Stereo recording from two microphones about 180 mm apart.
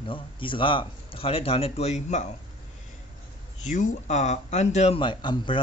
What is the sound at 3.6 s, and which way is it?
Speech, 45° left (ahead or behind).